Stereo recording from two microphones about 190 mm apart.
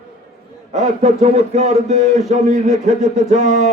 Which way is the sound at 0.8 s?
35° right (ahead or behind).